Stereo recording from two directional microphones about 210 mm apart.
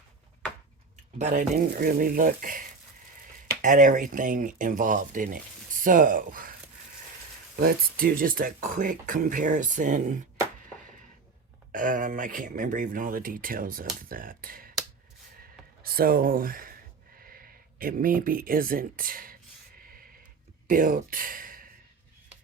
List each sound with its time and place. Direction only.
1.2 s speech: 40° right (ahead or behind)
11.7 s speech: 40° right (ahead or behind)
15.8 s speech: 45° right (ahead or behind)
19.8 s a sound: 45° right (ahead or behind)
20.7 s speech: 40° right (ahead or behind)